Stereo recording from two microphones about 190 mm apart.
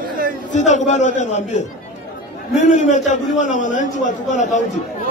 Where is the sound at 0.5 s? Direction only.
40° left (ahead or behind).